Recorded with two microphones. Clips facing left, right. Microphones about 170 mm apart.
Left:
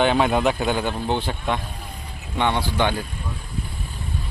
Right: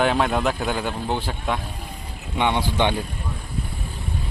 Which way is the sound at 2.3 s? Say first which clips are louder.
Even; 15° right (ahead or behind).